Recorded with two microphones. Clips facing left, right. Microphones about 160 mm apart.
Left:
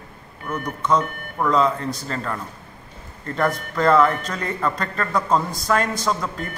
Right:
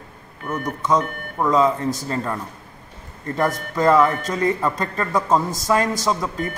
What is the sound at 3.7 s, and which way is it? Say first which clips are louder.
A man's voice: right 1 dB; 15° right (ahead or behind).